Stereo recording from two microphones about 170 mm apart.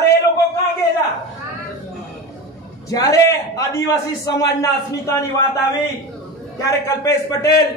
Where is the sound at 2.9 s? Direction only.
20° left (ahead or behind).